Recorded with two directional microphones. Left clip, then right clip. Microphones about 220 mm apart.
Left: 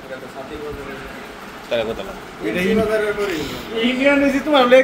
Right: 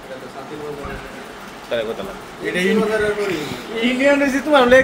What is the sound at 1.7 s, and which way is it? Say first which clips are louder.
Speech: left 1 dB; 5° right (ahead or behind).